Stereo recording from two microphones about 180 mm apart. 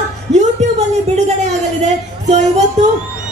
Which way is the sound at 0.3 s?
40° right (ahead or behind).